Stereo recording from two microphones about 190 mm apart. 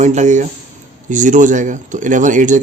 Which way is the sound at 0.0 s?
40° right (ahead or behind).